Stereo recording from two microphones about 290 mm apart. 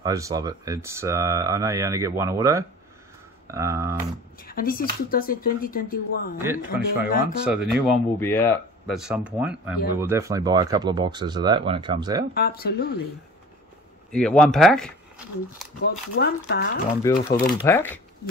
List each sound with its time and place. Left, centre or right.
0.0 s speech: centre
4.4 s speech: left
6.4 s speech: centre
7.1 s speech: left
7.4 s speech: centre
12.4 s speech: left
14.1 s speech: centre
15.8 s speech: left
17.0 s speech: centre